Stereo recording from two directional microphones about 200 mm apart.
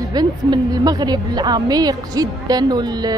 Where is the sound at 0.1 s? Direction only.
20° right (ahead or behind).